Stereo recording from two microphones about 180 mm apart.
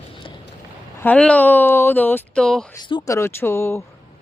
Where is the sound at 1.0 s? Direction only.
5° left (ahead or behind).